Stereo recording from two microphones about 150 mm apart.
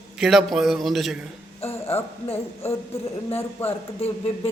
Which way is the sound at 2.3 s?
15° left (ahead or behind).